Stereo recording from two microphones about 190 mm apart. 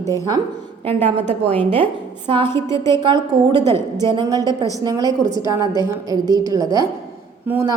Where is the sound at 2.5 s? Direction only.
15° left (ahead or behind).